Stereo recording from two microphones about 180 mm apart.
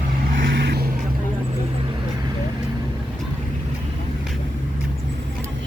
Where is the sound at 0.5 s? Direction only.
70° right (ahead or behind).